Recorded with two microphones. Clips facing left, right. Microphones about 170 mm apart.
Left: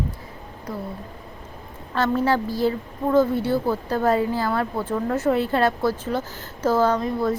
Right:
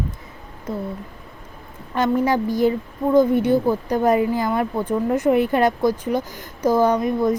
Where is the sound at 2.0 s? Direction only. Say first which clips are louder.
Right 2 dB; 15° right (ahead or behind).